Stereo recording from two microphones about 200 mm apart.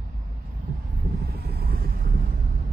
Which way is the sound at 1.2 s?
50° right (ahead or behind).